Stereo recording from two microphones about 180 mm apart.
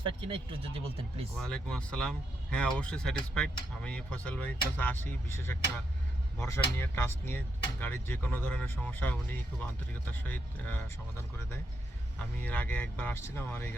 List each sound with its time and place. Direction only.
0.0 s speech: 30° right (ahead or behind)
1.4 s speech: 5° left (ahead or behind)
12.2 s speech: 10° left (ahead or behind)